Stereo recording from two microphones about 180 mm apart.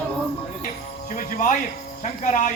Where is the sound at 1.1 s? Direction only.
45° left (ahead or behind).